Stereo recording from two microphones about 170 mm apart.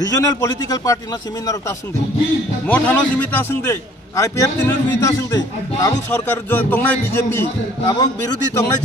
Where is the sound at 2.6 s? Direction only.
10° left (ahead or behind).